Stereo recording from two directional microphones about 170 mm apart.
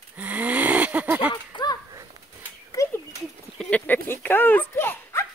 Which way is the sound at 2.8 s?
20° left (ahead or behind).